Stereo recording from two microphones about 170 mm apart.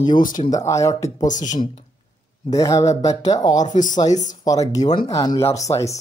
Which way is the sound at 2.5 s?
20° left (ahead or behind).